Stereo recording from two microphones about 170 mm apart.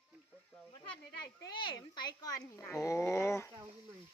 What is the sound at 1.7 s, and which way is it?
A woman's voice, 25° left (ahead or behind).